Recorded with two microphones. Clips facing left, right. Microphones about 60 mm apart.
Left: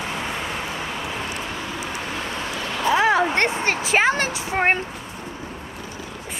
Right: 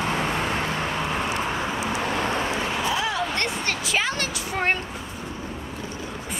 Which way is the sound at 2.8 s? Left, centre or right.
Left.